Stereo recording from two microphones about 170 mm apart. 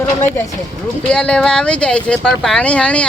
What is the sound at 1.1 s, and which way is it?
Speech, 5° left (ahead or behind).